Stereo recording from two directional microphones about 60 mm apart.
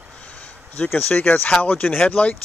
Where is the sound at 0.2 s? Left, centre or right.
Left.